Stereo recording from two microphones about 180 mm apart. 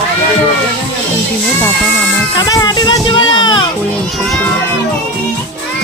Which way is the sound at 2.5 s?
20° left (ahead or behind).